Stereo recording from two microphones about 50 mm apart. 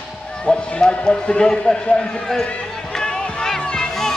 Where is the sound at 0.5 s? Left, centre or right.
Centre.